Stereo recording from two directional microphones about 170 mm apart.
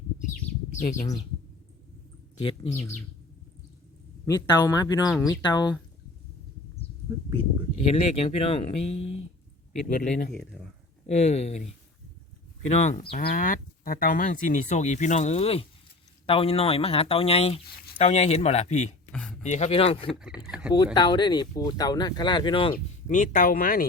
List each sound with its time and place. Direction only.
0.7 s speech: 45° left (ahead or behind)
4.3 s speech: 20° left (ahead or behind)
7.9 s speech: 40° left (ahead or behind)
9.9 s a man's voice: 55° left (ahead or behind)
10.5 s speech: 5° right (ahead or behind)
11.0 s speech: 40° left (ahead or behind)
12.6 s speech: 40° left (ahead or behind)
13.1 s speech: 60° left (ahead or behind); by 20.1 s 35° left (ahead or behind)
20.1 s speech: 5° right (ahead or behind)
20.7 s speech: 25° left (ahead or behind)
23.0 s speech: 45° left (ahead or behind)